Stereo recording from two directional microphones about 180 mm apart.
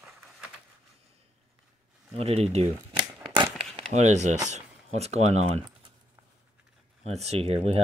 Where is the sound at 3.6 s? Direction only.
35° right (ahead or behind).